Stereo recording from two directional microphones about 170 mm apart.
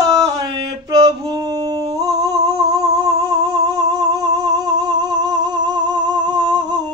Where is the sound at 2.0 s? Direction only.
20° right (ahead or behind).